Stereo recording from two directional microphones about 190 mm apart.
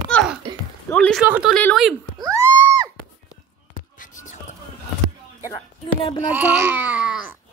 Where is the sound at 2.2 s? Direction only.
20° right (ahead or behind).